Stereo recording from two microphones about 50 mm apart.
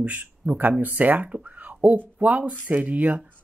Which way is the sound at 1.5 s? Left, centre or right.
Right.